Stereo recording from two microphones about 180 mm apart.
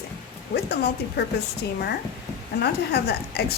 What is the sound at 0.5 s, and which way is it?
Speech, 65° left (ahead or behind).